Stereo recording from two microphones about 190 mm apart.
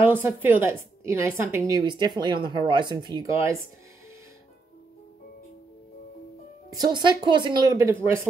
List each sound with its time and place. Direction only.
0.0 s a woman's voice: 10° right (ahead or behind)
6.7 s a woman's voice: 20° right (ahead or behind)